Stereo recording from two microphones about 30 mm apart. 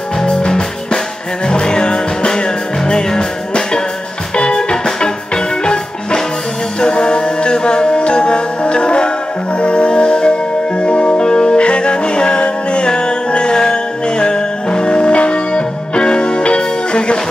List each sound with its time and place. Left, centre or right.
0.5 s music: centre; by 11.2 s left
11.2 s music: left